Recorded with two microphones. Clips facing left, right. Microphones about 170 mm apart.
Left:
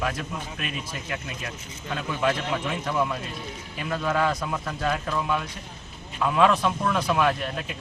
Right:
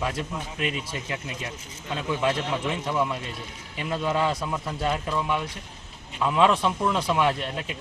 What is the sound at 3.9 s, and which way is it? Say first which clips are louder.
Speech: even; 20° right (ahead or behind).